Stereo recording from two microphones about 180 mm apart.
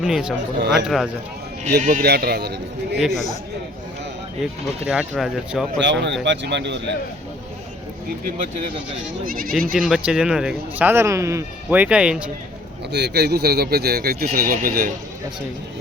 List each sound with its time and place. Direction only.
0.0 s speech: 5° right (ahead or behind)
0.6 s speech: 75° right (ahead or behind)
0.9 s speech: centre (ahead or behind)
1.8 s speech: 45° right (ahead or behind)
2.0 s speech: 60° right (ahead or behind)
3.0 s speech: centre (ahead or behind)
4.9 s speech: 5° right (ahead or behind)
5.8 s speech: 80° right
9.2 s speech: 50° right (ahead or behind)
9.7 s speech: 5° right (ahead or behind)
12.9 s speech: 65° right (ahead or behind); by 14.9 s 50° right (ahead or behind)